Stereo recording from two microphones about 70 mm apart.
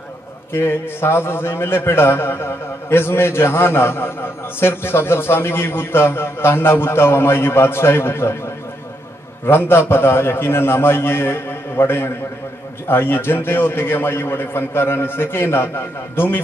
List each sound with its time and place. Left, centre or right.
0.5 s a man's voice: left
9.5 s a man's voice: left